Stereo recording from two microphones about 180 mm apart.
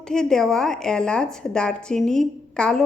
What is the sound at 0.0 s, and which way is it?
A woman's voice, 5° left (ahead or behind).